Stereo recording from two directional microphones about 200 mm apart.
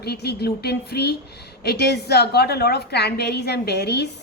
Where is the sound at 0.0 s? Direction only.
55° left (ahead or behind).